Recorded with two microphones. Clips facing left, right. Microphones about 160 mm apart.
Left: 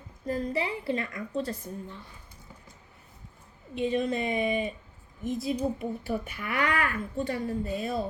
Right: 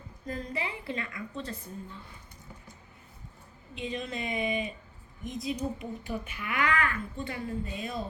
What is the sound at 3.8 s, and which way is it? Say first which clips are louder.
Speech: left 8 dB; 40° left (ahead or behind).